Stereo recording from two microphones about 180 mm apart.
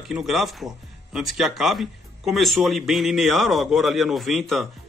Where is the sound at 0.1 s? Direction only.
Centre (ahead or behind).